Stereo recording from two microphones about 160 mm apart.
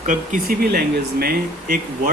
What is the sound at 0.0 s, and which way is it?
Speech, 55° right (ahead or behind).